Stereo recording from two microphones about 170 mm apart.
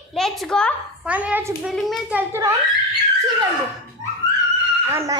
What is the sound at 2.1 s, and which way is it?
Giggle, 15° right (ahead or behind).